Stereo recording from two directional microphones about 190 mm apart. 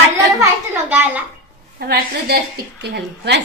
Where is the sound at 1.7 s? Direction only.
55° right (ahead or behind).